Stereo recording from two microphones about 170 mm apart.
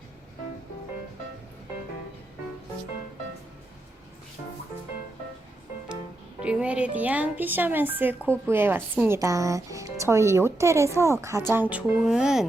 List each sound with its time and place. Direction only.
6.4 s speech: 5° right (ahead or behind)